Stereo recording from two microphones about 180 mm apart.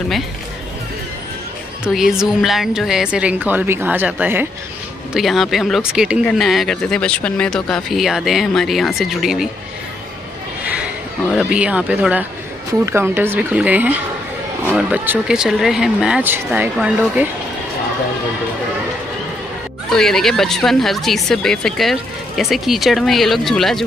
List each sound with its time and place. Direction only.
1.9 s speech: centre (ahead or behind)
10.6 s a sound: 5° right (ahead or behind)
11.3 s speech: 5° right (ahead or behind)
19.9 s speech: centre (ahead or behind)